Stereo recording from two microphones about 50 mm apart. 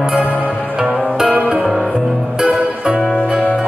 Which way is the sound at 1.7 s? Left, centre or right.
Centre.